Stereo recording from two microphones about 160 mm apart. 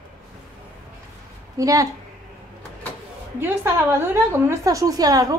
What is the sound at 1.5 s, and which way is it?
Speech, 20° right (ahead or behind).